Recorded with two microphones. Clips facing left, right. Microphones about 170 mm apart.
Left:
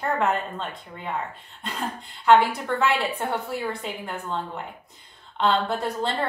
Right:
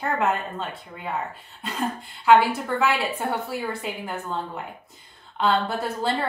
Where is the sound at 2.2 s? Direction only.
Centre (ahead or behind).